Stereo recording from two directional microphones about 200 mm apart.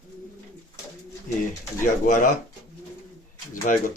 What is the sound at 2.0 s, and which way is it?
Speech, 40° left (ahead or behind).